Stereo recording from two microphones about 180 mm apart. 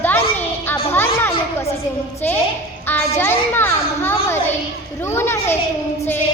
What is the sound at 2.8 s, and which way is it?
A child's voice, 10° left (ahead or behind).